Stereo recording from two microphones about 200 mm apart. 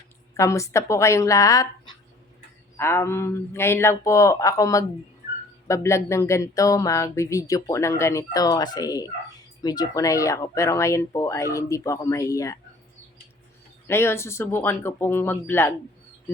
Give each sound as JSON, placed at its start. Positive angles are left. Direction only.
{"t": 0.3, "sound": "speech", "side_deg": 15}
{"t": 13.8, "sound": "speech", "side_deg": 10}